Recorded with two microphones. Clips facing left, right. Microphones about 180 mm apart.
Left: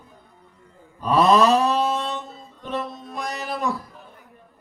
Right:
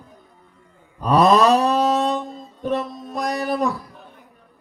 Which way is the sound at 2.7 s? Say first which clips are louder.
Right 3 dB; 45° right (ahead or behind).